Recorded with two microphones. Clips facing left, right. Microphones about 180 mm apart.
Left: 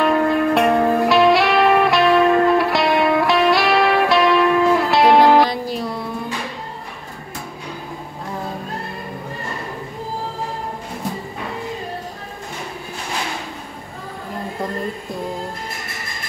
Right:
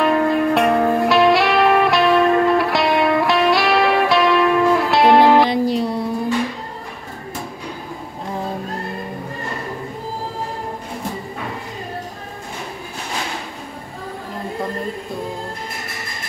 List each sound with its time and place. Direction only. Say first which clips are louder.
0.0 s music: even; centre (ahead or behind)
5.5 s music: right 6 dB; 30° right (ahead or behind)